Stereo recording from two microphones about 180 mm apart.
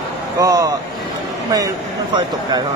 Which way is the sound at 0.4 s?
20° right (ahead or behind).